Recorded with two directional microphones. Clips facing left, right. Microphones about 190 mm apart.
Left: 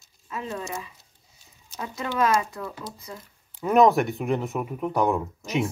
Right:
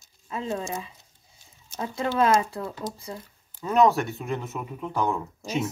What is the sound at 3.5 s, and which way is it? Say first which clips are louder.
Speech: left 3 dB; 15° left (ahead or behind).